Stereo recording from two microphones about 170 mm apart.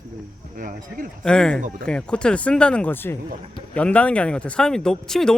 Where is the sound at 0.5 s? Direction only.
50° right (ahead or behind).